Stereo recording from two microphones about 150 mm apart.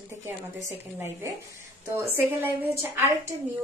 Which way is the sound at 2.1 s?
15° right (ahead or behind).